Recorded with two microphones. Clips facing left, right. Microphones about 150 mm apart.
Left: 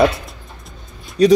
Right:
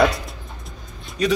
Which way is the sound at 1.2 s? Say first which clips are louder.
Left 9 dB; 35° left (ahead or behind).